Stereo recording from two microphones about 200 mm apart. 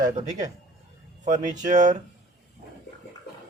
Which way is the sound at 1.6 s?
40° right (ahead or behind).